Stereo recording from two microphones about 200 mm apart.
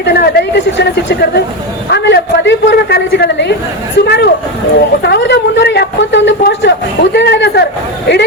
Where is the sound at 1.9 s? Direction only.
60° left (ahead or behind).